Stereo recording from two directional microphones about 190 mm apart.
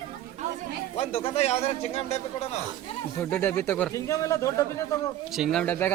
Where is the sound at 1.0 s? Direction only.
30° left (ahead or behind).